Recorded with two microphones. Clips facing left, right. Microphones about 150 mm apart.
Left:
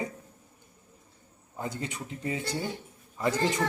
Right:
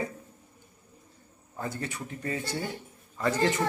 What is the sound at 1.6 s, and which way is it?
Speech, 15° left (ahead or behind).